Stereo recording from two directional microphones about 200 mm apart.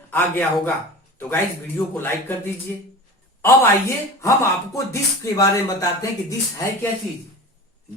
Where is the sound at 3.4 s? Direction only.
15° left (ahead or behind).